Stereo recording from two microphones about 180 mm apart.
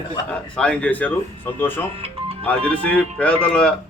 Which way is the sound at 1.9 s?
35° right (ahead or behind).